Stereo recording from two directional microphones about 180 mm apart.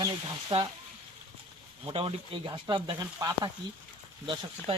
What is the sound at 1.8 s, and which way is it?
Speech, 30° right (ahead or behind).